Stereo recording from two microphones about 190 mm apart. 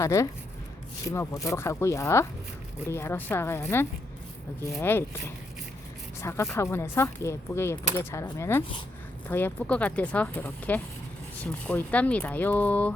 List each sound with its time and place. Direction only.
0.0 s speech: 15° left (ahead or behind)
6.2 s speech: 15° left (ahead or behind)